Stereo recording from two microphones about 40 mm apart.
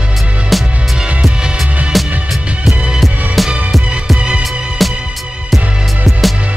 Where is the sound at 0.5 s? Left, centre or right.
Centre.